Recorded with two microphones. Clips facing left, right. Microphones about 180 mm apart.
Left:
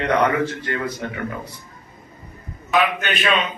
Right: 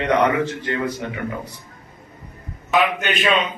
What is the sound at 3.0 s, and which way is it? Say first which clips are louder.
Speech: right 1 dB; 15° right (ahead or behind).